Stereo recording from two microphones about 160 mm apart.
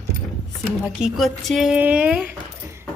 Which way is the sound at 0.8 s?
Centre (ahead or behind).